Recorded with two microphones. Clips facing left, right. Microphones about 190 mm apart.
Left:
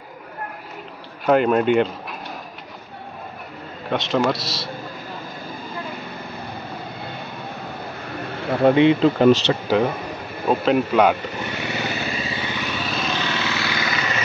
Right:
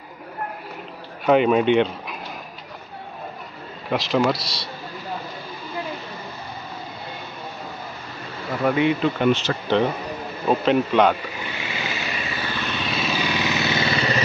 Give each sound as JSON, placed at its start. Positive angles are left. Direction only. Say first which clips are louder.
{"t": 1.2, "sound": "speech", "louder": "even", "side_deg": 0}
{"t": 3.9, "sound": "a man's voice", "louder": "even", "side_deg": 0}
{"t": 8.6, "sound": "speech", "louder": "left 5 dB", "side_deg": 30}
{"t": 9.7, "sound": "a man's voice", "louder": "right 2 dB", "side_deg": 5}
{"t": 11.3, "sound": "vehicle", "louder": "left 4 dB", "side_deg": 45}
{"t": 12.1, "sound": "vehicle", "louder": "left 2 dB", "side_deg": 30}
{"t": 12.4, "sound": "vehicle", "louder": "left 1 dB", "side_deg": 10}